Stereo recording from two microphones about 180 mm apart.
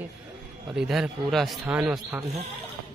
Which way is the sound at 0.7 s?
Centre (ahead or behind).